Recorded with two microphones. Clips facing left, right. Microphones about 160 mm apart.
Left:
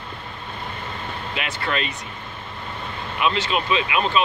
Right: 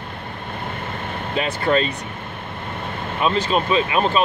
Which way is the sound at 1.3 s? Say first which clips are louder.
Right 8 dB; 35° right (ahead or behind).